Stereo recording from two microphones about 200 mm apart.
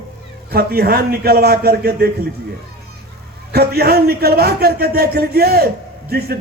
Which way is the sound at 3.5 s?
50° right (ahead or behind).